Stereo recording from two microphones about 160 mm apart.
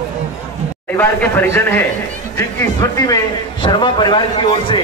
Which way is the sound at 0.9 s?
10° left (ahead or behind).